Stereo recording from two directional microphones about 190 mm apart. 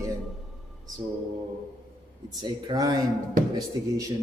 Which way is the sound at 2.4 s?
20° right (ahead or behind).